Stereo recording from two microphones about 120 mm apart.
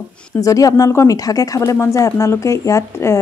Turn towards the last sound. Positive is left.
turn(degrees=25)  # may be behind; listen again after turning